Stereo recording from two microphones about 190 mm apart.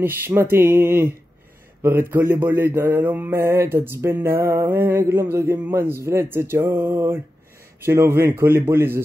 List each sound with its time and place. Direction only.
0.0 s mantra: 10° right (ahead or behind)